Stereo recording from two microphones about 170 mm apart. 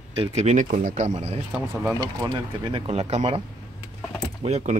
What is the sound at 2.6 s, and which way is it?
Speech, 35° right (ahead or behind).